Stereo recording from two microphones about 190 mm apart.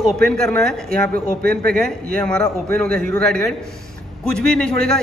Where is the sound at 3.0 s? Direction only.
5° left (ahead or behind).